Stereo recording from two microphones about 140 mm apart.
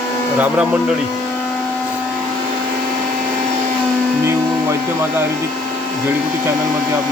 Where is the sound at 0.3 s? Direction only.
10° right (ahead or behind).